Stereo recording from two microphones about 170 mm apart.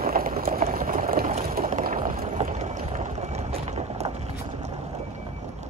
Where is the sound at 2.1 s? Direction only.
40° right (ahead or behind).